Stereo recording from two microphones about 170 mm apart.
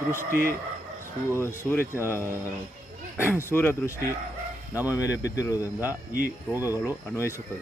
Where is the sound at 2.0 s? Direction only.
15° left (ahead or behind).